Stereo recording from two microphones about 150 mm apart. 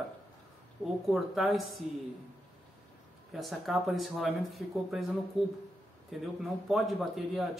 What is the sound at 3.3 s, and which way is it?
Speech, centre (ahead or behind).